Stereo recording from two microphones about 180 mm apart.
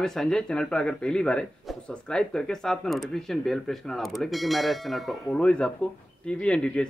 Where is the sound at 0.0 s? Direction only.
5° left (ahead or behind).